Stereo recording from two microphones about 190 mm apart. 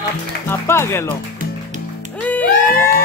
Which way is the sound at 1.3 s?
40° right (ahead or behind).